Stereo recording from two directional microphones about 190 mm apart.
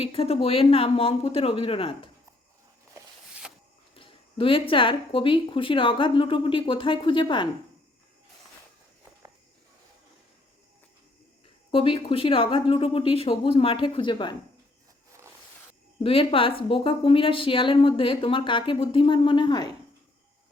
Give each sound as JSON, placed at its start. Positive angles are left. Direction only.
{"t": 0.0, "sound": "speech", "side_deg": 30}
{"t": 3.9, "sound": "a woman's voice", "side_deg": 30}
{"t": 11.7, "sound": "a woman's voice", "side_deg": 30}
{"t": 16.0, "sound": "a woman's voice", "side_deg": 30}